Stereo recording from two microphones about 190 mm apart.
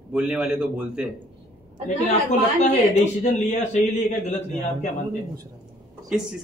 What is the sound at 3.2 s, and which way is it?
Speech, 35° left (ahead or behind).